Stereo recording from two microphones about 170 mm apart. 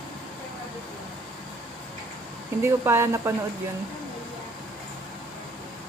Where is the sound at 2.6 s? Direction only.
15° right (ahead or behind).